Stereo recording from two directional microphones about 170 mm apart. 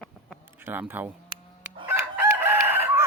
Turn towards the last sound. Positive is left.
turn(degrees=-15)  # may be behind; listen again after turning